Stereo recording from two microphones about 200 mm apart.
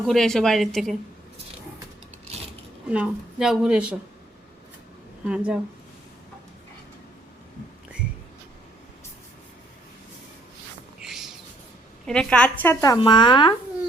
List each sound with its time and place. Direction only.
0.0 s speech: centre (ahead or behind)
2.9 s speech: 5° right (ahead or behind)
5.2 s speech: 5° right (ahead or behind)
11.0 s a sound: centre (ahead or behind)
12.0 s speech: 5° left (ahead or behind)
13.0 s speech: 20° left (ahead or behind)